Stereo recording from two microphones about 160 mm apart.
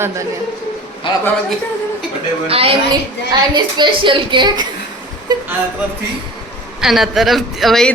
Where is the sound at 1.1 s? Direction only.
30° left (ahead or behind).